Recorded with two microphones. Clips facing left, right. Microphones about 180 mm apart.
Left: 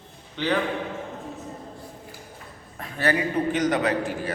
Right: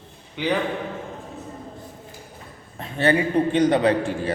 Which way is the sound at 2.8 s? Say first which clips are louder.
Right 4 dB; 25° right (ahead or behind).